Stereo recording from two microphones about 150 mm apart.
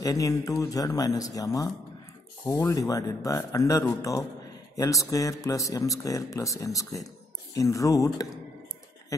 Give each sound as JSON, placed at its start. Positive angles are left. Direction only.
{"t": 0.0, "sound": "speech", "side_deg": 25}